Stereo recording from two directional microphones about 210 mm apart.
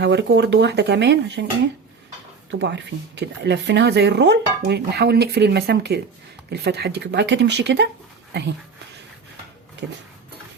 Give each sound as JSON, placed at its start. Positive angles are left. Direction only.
{"t": 0.0, "sound": "speech", "side_deg": -55}
{"t": 2.5, "sound": "speech", "side_deg": -55}